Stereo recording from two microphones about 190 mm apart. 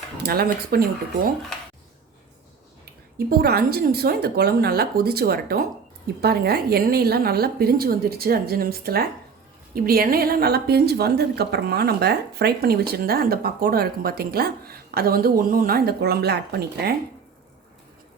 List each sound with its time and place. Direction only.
0.2 s speech: 55° right (ahead or behind)
2.8 s a woman's voice: 55° right (ahead or behind)